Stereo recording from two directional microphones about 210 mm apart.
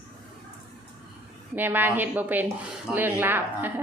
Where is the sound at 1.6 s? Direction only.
10° right (ahead or behind).